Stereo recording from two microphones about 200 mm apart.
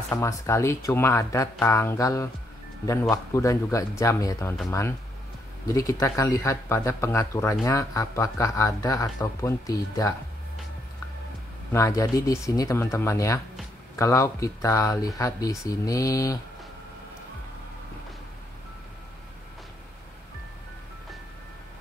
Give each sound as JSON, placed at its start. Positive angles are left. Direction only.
{"t": 0.1, "sound": "speech", "side_deg": 15}
{"t": 11.7, "sound": "speech", "side_deg": 15}